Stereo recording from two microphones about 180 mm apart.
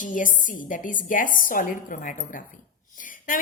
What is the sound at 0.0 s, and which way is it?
A woman's voice, 45° left (ahead or behind).